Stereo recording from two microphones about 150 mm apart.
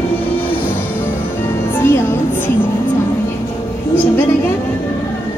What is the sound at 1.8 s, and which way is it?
Music, 15° left (ahead or behind).